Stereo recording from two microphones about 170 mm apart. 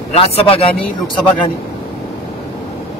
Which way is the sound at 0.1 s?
35° left (ahead or behind).